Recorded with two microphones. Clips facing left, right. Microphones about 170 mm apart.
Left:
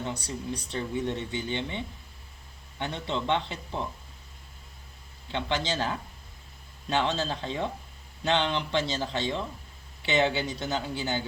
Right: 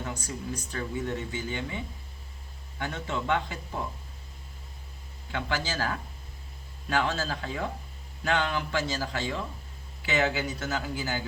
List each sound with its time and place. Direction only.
0.0 s a sound: 30° left (ahead or behind)
0.7 s speech: 25° left (ahead or behind)
5.3 s speech: 25° left (ahead or behind)